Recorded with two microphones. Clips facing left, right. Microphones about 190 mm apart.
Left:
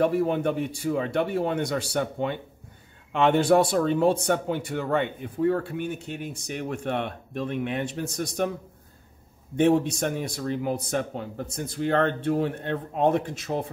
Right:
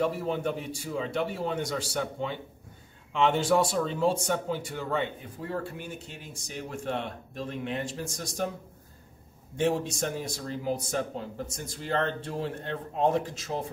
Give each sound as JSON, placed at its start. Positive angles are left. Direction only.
{"t": 0.0, "sound": "speech", "side_deg": 60}
{"t": 9.6, "sound": "speech", "side_deg": 60}